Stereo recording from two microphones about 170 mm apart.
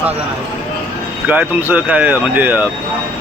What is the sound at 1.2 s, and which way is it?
Speech, 10° right (ahead or behind).